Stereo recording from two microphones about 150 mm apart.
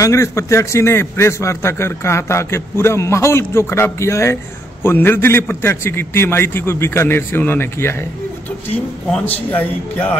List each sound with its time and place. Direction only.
0.0 s a man's voice: 20° left (ahead or behind)
9.1 s a man's voice: 10° left (ahead or behind)